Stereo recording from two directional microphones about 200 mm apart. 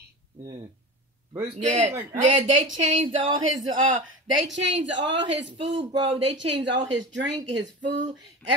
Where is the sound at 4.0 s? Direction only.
65° right (ahead or behind).